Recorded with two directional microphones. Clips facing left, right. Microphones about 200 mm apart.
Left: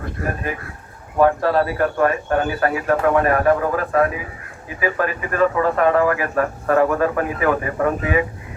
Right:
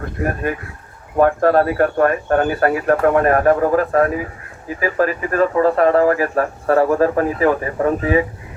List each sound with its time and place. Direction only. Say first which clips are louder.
0.2 s speech: right 4 dB; 15° right (ahead or behind)
1.2 s a man's voice: right 3 dB; 50° right (ahead or behind); by 8.2 s 30° right (ahead or behind)